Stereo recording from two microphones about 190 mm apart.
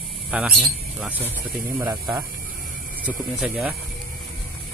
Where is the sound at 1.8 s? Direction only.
15° right (ahead or behind).